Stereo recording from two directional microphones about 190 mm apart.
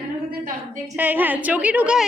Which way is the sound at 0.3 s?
45° right (ahead or behind).